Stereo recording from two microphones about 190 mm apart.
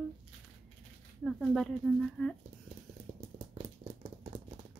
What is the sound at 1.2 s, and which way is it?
Speech, centre (ahead or behind).